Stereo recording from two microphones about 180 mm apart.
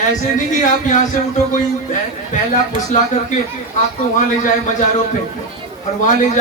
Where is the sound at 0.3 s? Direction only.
45° left (ahead or behind).